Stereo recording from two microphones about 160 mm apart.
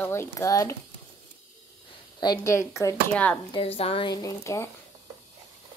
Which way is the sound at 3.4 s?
35° left (ahead or behind).